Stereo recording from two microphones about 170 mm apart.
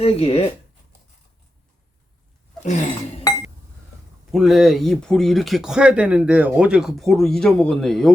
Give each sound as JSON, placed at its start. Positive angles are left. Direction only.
{"t": 0.0, "sound": "speech", "side_deg": 35}
{"t": 4.3, "sound": "speech", "side_deg": 0}